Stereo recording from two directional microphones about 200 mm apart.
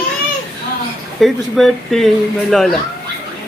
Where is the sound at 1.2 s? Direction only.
Centre (ahead or behind).